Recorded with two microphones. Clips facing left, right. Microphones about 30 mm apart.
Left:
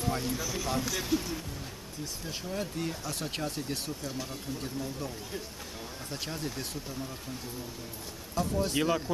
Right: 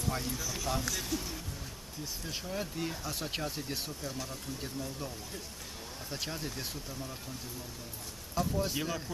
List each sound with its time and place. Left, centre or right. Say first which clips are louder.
0.1 s speech: left 2 dB; centre
2.2 s speech: left 2 dB; centre
4.1 s speech: left 3 dB; centre
4.6 s speech: left 3 dB; centre
8.4 s speech: left 2 dB; centre
8.7 s speech: left 7 dB; centre